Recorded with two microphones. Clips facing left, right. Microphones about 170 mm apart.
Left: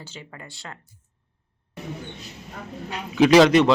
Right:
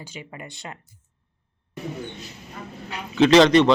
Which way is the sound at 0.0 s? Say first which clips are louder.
Right 3 dB; 15° right (ahead or behind).